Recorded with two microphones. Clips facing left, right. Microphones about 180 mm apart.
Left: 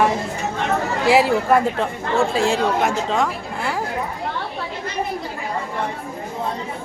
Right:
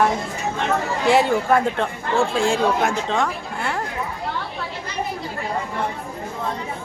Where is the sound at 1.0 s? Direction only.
5° left (ahead or behind).